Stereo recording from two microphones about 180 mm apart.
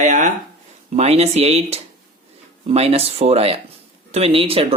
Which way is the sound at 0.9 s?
35° right (ahead or behind).